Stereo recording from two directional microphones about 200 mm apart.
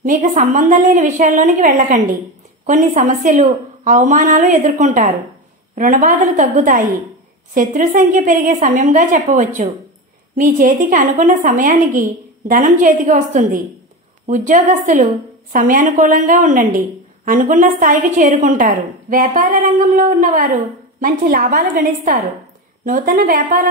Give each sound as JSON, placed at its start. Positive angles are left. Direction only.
{"t": 0.0, "sound": "a woman's voice", "side_deg": -40}